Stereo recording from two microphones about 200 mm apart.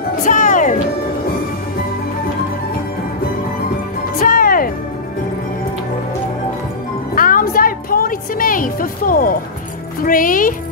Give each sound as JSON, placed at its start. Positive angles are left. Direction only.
{"t": 0.2, "sound": "music", "side_deg": 40}
{"t": 4.2, "sound": "music", "side_deg": 45}
{"t": 7.2, "sound": "music", "side_deg": 45}